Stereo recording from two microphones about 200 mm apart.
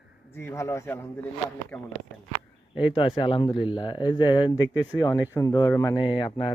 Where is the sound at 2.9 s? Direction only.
25° left (ahead or behind).